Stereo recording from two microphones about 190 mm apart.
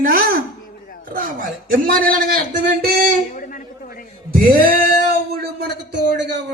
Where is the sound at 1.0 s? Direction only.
45° right (ahead or behind).